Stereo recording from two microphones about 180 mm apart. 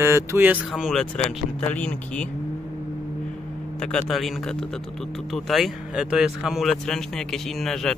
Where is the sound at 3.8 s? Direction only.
5° left (ahead or behind).